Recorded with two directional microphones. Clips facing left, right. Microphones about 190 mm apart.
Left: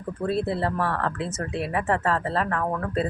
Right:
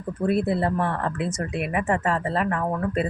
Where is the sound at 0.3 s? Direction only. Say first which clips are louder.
Right 3 dB; 15° right (ahead or behind).